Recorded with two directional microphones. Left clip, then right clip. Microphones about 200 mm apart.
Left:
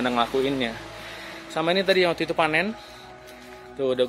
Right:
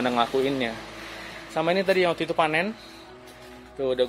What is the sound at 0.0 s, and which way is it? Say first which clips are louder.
Speech: even; centre (ahead or behind).